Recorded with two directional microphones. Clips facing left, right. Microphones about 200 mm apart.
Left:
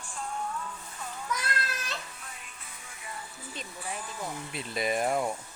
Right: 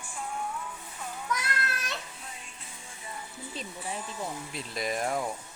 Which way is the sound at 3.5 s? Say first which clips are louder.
Right 1 dB; 30° right (ahead or behind).